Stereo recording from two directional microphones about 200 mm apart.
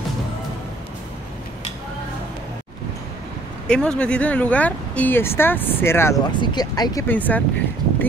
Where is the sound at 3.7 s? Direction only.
5° left (ahead or behind).